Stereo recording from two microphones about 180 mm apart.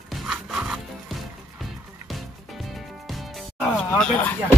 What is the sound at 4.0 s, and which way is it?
Speech, 5° left (ahead or behind).